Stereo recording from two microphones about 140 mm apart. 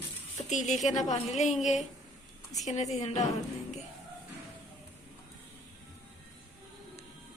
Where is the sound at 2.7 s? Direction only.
55° left (ahead or behind).